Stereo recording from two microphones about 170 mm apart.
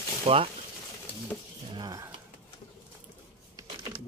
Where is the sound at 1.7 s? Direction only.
20° right (ahead or behind).